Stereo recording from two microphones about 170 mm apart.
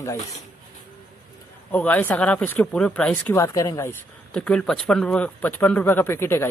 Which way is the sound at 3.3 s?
15° left (ahead or behind).